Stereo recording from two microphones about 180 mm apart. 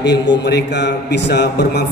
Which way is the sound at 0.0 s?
75° left (ahead or behind).